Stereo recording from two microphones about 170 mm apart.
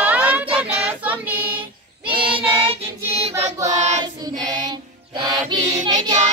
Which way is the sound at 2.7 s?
35° right (ahead or behind).